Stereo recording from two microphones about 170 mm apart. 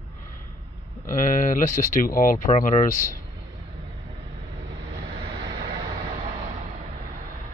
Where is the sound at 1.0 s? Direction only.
50° left (ahead or behind).